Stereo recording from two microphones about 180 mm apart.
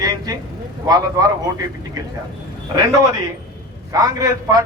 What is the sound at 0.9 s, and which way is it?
Speech, 20° right (ahead or behind).